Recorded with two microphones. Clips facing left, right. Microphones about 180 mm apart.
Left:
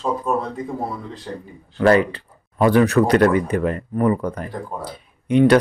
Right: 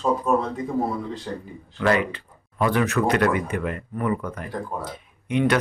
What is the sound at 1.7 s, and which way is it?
Speech, 35° left (ahead or behind).